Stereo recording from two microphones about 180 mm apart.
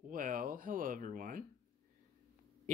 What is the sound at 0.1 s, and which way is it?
Speech, 50° right (ahead or behind).